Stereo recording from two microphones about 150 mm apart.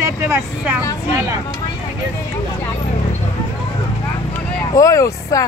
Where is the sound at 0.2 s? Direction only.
10° right (ahead or behind).